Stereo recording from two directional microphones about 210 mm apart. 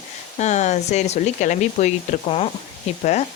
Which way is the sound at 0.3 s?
35° left (ahead or behind).